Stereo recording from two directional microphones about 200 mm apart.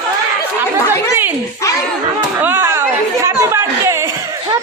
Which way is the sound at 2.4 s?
10° right (ahead or behind).